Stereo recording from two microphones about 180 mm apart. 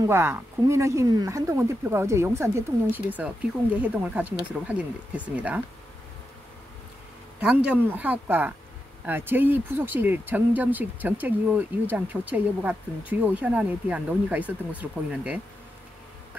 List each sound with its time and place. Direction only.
0.0 s speech: 15° right (ahead or behind)
7.3 s speech: 5° right (ahead or behind)